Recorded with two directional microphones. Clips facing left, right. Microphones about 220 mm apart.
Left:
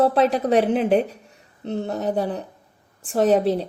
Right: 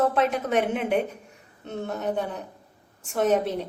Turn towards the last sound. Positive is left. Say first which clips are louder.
# left 5 dB
turn(degrees=35)  # may be behind; listen again after turning